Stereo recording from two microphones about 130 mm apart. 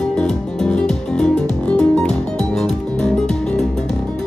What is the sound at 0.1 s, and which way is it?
Music, 5° left (ahead or behind).